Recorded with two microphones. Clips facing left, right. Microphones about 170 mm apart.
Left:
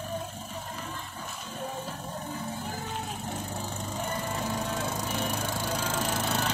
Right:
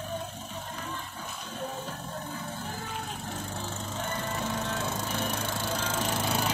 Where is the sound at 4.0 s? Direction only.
10° left (ahead or behind).